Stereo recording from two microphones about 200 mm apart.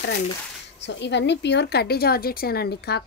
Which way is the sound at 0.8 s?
60° left (ahead or behind).